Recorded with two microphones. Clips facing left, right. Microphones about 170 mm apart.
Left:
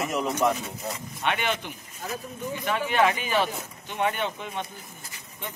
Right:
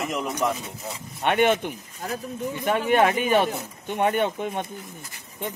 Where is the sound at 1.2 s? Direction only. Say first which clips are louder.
Right 8 dB; 50° right (ahead or behind).